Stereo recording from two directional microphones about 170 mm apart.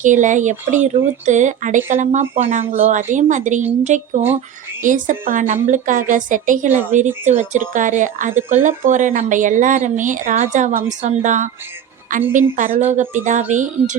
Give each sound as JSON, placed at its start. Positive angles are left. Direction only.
{"t": 0.0, "sound": "speech", "side_deg": -45}